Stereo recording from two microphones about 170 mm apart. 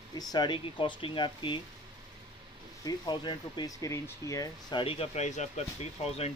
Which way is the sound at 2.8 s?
25° left (ahead or behind).